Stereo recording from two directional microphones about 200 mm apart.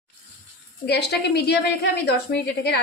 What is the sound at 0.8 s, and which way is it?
A woman's voice, 55° left (ahead or behind).